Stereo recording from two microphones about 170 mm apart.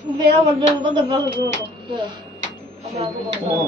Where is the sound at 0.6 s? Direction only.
25° right (ahead or behind).